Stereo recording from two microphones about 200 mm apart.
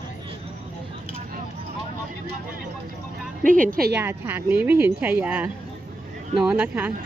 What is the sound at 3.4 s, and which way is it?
Speech, 40° right (ahead or behind).